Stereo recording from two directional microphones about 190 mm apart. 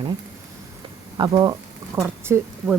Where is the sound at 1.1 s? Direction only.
20° right (ahead or behind).